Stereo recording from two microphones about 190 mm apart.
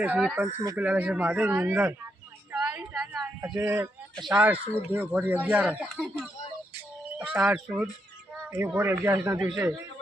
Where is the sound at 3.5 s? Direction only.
10° right (ahead or behind).